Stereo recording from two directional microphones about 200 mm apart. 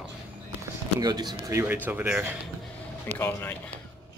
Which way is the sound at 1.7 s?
10° right (ahead or behind).